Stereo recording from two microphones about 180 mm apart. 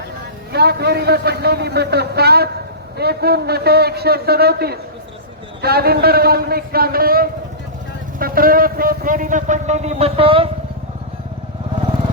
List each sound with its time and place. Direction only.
0.5 s a man's voice: 65° right (ahead or behind); by 10.5 s 30° right (ahead or behind)